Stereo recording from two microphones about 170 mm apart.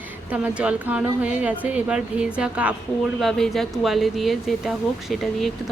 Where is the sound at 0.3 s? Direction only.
5° right (ahead or behind).